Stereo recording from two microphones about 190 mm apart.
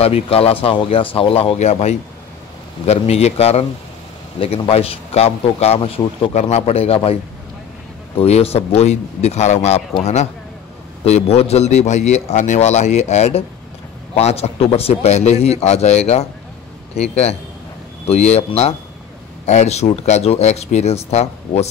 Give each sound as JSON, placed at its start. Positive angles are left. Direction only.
{"t": 0.0, "sound": "a man's voice", "side_deg": 30}
{"t": 8.2, "sound": "a man's voice", "side_deg": 30}
{"t": 11.1, "sound": "a man's voice", "side_deg": 35}